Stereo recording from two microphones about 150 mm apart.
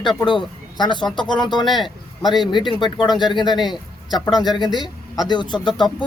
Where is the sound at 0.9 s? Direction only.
30° left (ahead or behind).